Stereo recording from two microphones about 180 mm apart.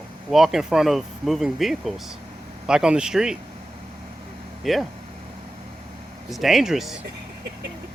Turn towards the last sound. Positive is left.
turn(degrees=0)  # may be behind; listen again after turning